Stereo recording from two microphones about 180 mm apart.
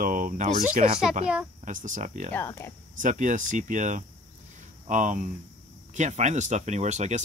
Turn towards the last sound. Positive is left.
turn(degrees=-40)  # may be behind; listen again after turning